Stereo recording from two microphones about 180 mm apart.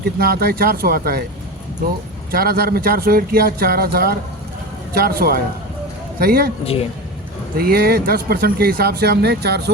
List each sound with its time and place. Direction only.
0.0 s speech: 60° right (ahead or behind)
2.3 s speech: 55° right (ahead or behind)
7.5 s speech: 60° right (ahead or behind)